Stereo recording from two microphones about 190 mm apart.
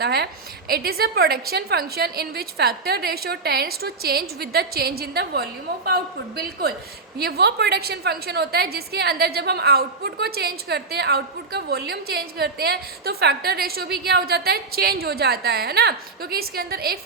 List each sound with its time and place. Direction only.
0.0 s a woman's voice: 55° right (ahead or behind)